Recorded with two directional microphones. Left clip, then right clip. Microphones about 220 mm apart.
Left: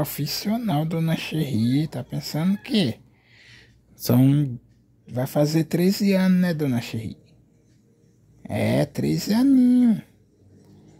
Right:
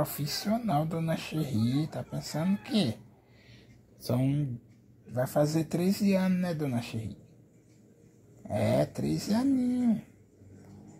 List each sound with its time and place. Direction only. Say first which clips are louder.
0.0 s speech: left 5 dB; 55° left (ahead or behind)
8.5 s speech: left 4 dB; 55° left (ahead or behind)